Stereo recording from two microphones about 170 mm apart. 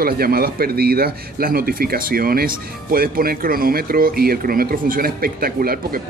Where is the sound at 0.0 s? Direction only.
65° right (ahead or behind).